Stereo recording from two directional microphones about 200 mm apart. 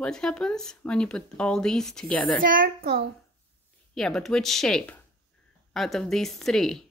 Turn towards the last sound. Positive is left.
turn(degrees=0)  # may be behind; listen again after turning